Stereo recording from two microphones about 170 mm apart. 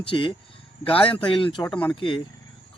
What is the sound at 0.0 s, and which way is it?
A man's voice, 30° left (ahead or behind).